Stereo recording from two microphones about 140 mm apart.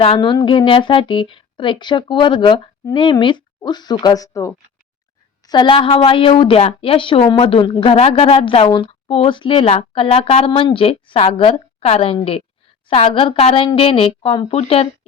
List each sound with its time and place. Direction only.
0.2 s a woman's voice: 30° left (ahead or behind)